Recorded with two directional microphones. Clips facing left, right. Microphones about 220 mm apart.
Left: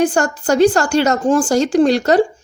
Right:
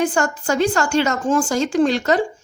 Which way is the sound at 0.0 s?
40° left (ahead or behind).